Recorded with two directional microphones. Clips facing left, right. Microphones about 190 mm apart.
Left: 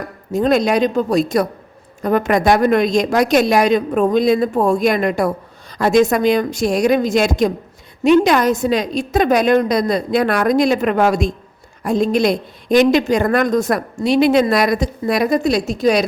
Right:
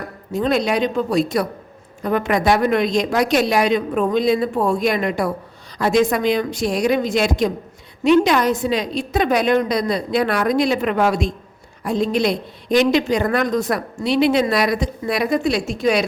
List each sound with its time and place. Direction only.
0.3 s a woman's voice: 45° left (ahead or behind)